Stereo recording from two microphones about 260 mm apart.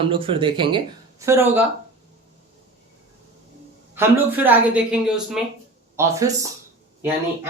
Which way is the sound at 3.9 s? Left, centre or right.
Centre.